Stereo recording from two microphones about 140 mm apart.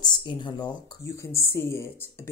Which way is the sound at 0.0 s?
30° left (ahead or behind).